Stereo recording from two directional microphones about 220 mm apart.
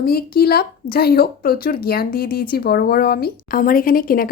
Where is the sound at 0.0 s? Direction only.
45° left (ahead or behind).